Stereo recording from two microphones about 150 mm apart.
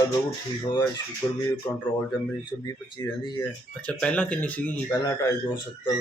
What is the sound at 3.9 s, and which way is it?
Speech, 10° left (ahead or behind).